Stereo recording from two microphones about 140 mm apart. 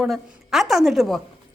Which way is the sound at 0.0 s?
Centre (ahead or behind).